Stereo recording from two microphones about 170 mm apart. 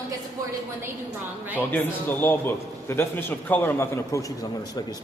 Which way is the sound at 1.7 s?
10° left (ahead or behind).